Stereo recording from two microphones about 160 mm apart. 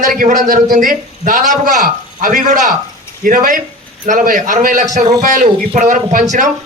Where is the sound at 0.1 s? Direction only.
55° right (ahead or behind).